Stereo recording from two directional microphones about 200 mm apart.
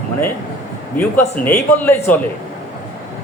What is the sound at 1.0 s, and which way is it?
A man's voice, 10° left (ahead or behind).